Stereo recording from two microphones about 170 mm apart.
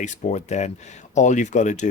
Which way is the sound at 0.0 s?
45° left (ahead or behind).